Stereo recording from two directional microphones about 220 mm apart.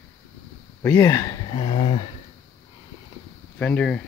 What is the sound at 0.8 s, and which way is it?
Speech, 10° left (ahead or behind).